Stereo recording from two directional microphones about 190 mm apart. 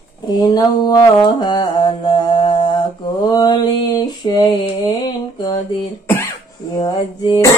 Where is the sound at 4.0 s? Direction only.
20° left (ahead or behind).